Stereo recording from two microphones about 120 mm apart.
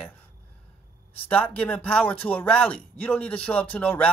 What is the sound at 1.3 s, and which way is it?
Speech, 10° left (ahead or behind).